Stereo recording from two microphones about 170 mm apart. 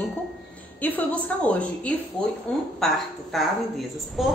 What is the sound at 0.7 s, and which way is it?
A woman's voice, 10° left (ahead or behind).